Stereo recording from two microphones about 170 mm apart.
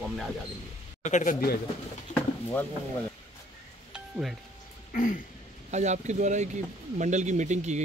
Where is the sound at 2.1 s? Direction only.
10° left (ahead or behind).